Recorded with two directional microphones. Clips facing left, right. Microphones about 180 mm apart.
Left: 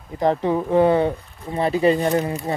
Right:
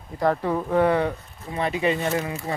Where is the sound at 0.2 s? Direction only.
25° left (ahead or behind).